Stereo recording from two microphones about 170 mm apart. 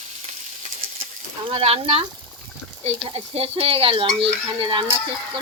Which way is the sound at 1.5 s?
35° right (ahead or behind).